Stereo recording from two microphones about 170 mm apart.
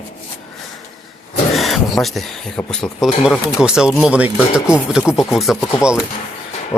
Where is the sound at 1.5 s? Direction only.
Centre (ahead or behind).